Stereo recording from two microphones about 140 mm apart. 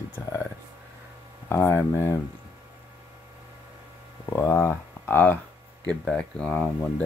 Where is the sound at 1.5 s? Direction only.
15° left (ahead or behind).